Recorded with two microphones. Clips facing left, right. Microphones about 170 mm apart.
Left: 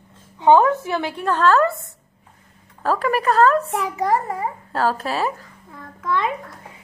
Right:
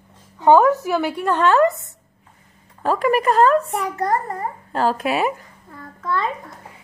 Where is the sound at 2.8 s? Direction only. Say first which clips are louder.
Right 2 dB; 10° right (ahead or behind).